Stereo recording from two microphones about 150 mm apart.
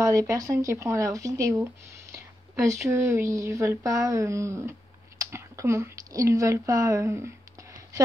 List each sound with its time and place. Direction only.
0.0 s speech: 20° right (ahead or behind)